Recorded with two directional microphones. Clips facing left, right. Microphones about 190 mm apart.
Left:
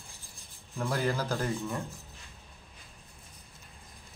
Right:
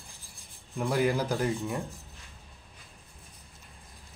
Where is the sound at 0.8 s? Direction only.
10° right (ahead or behind).